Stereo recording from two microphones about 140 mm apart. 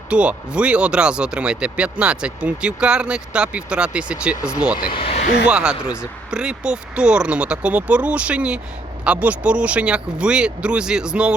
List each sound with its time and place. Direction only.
0.1 s speech: 10° right (ahead or behind)
4.9 s vehicle: 45° left (ahead or behind)
5.5 s speech: 5° right (ahead or behind)